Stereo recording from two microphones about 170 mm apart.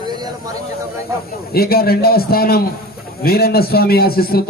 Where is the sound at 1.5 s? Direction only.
65° left (ahead or behind).